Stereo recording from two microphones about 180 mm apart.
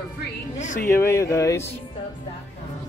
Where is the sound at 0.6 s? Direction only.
45° left (ahead or behind).